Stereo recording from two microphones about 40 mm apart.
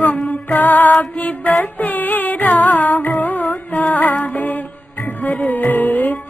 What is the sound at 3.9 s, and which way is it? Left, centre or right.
Music, left.